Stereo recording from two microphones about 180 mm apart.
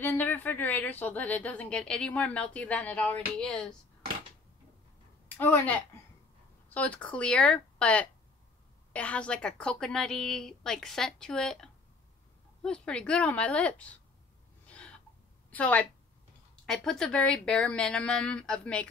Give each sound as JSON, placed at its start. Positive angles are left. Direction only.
{"t": 0.0, "sound": "a woman's voice", "side_deg": 10}
{"t": 5.4, "sound": "a woman's voice", "side_deg": 10}
{"t": 14.7, "sound": "gasp", "side_deg": 5}
{"t": 15.5, "sound": "a woman's voice", "side_deg": 10}